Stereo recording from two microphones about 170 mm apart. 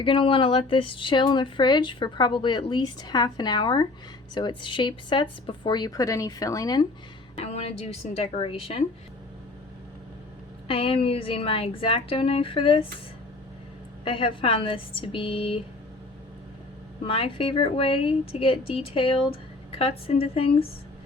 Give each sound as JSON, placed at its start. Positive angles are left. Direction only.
{"t": 0.0, "sound": "speech", "side_deg": 30}
{"t": 7.3, "sound": "a woman's voice", "side_deg": 40}
{"t": 10.7, "sound": "a woman's voice", "side_deg": 35}
{"t": 14.0, "sound": "a woman's voice", "side_deg": 30}
{"t": 17.1, "sound": "a woman's voice", "side_deg": 30}